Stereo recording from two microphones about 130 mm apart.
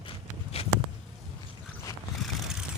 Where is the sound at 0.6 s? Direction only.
50° left (ahead or behind).